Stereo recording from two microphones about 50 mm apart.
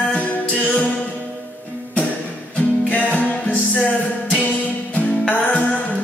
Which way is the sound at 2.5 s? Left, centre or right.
Left.